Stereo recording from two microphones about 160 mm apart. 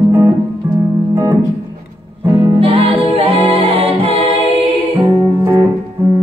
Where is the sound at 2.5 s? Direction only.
35° right (ahead or behind).